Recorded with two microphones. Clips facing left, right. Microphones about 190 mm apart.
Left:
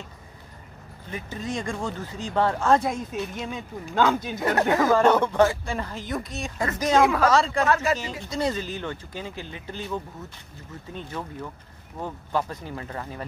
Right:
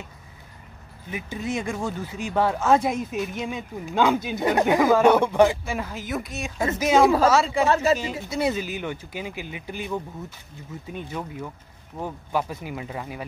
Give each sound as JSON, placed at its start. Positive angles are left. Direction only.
{"t": 1.1, "sound": "speech", "side_deg": -10}
{"t": 7.6, "sound": "speech", "side_deg": -25}
{"t": 8.3, "sound": "speech", "side_deg": -10}